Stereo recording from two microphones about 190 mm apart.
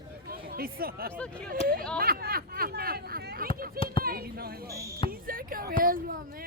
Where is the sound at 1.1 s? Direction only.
5° left (ahead or behind).